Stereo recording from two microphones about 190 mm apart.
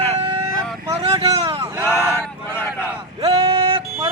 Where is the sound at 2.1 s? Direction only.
10° left (ahead or behind).